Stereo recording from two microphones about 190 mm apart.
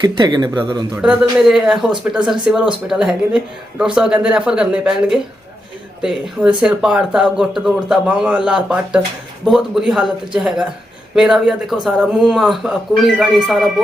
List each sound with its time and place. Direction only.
0.0 s speech: 25° right (ahead or behind)
0.9 s speech: 5° right (ahead or behind)